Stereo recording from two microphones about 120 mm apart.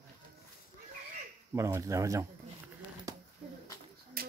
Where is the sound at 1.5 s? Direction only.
25° right (ahead or behind).